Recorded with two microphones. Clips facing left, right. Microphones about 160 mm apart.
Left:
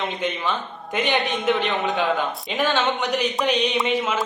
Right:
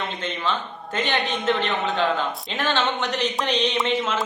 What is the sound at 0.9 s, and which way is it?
Speech, 15° left (ahead or behind).